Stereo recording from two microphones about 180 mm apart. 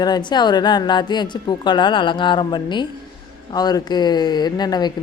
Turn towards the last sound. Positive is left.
turn(degrees=25)  # may be behind; listen again after turning